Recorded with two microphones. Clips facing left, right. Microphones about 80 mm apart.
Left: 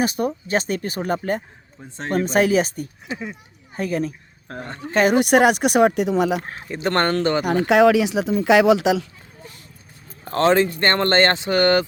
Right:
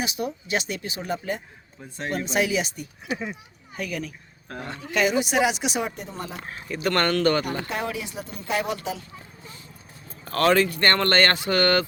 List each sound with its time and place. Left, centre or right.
0.0 s speech: left
5.1 s speech: left
6.7 s speech: left
7.4 s speech: left
10.2 s speech: left